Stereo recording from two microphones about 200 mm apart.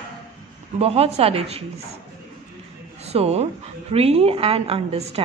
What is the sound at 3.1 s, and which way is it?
A woman's voice, 30° right (ahead or behind).